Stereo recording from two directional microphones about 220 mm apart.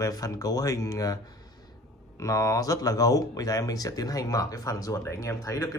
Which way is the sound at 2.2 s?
15° left (ahead or behind).